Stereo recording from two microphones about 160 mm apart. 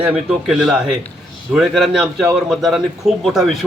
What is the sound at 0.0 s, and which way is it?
A man's voice, 5° right (ahead or behind).